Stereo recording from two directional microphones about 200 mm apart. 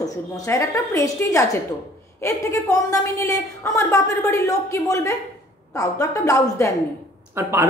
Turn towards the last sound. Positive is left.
turn(degrees=-10)  # may be behind; listen again after turning